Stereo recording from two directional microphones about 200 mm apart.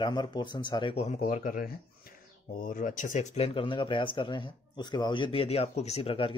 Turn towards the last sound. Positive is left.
turn(degrees=30)  # may be behind; listen again after turning